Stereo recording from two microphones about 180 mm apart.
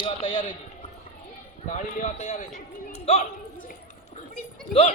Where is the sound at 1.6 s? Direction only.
40° left (ahead or behind).